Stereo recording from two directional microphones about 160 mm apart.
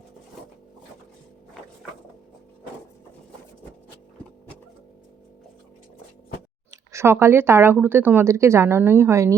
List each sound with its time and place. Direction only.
6.7 s speech: 15° right (ahead or behind)